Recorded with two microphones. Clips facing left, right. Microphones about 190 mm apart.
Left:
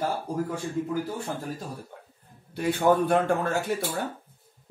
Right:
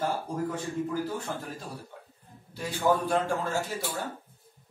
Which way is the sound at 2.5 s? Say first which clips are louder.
Left 4 dB; 60° left (ahead or behind).